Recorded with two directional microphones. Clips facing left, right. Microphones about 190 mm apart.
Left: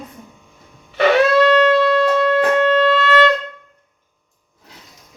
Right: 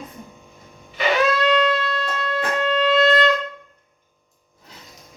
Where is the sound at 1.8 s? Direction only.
75° left (ahead or behind).